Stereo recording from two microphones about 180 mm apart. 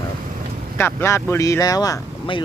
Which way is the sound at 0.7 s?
15° left (ahead or behind).